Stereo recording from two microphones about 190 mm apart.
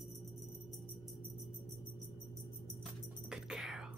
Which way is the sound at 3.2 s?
5° right (ahead or behind).